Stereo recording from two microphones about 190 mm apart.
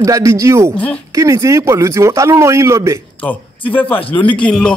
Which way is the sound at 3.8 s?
10° left (ahead or behind).